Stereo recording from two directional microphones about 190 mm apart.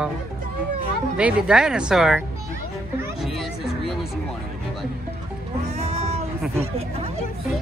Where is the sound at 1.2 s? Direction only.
5° right (ahead or behind).